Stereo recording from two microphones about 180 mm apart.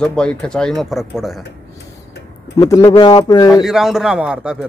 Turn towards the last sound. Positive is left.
turn(degrees=-5)  # may be behind; listen again after turning